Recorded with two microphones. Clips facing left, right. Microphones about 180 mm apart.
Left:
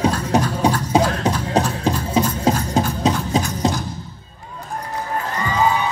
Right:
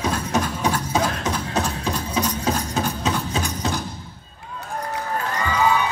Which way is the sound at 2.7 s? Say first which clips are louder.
Left 5 dB; 35° left (ahead or behind).